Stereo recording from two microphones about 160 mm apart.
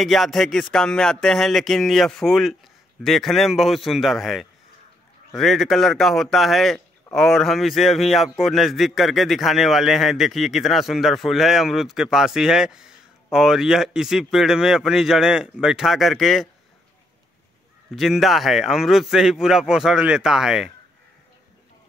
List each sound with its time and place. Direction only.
0.0 s a man's voice: centre (ahead or behind)
17.9 s a man's voice: centre (ahead or behind)